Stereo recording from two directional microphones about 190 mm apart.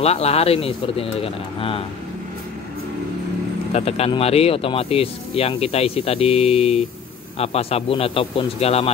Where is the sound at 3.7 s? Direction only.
30° left (ahead or behind).